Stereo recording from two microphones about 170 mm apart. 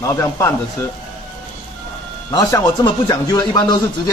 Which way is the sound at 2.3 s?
20° left (ahead or behind).